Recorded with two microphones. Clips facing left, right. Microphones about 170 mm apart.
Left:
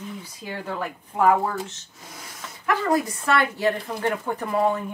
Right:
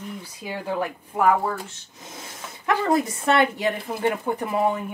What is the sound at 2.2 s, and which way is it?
Speech, 20° right (ahead or behind).